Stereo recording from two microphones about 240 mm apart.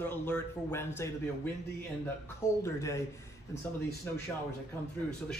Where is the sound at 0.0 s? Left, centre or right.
Centre.